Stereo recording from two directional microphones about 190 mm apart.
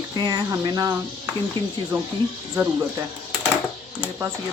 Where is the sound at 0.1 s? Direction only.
20° right (ahead or behind).